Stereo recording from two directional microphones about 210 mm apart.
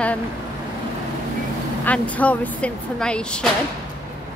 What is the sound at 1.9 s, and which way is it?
Speech, 5° left (ahead or behind).